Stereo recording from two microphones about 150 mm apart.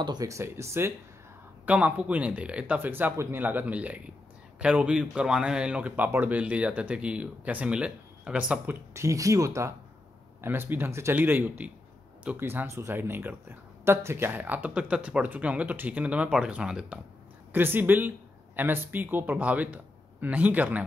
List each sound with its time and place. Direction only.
0.0 s speech: 25° right (ahead or behind); by 8.7 s 5° right (ahead or behind)
8.9 s speech: 20° right (ahead or behind)